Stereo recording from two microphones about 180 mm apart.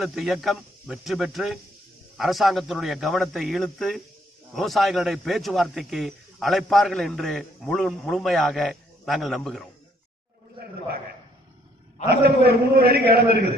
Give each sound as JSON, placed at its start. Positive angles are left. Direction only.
{"t": 0.0, "sound": "a man's voice", "side_deg": 0}
{"t": 12.1, "sound": "a man's voice", "side_deg": -60}